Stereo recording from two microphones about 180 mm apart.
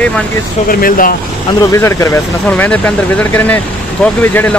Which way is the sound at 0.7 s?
55° left (ahead or behind).